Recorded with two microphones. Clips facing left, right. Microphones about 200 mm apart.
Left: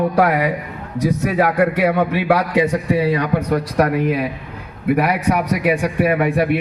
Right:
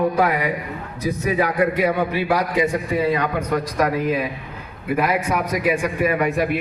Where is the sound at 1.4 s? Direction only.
70° left (ahead or behind).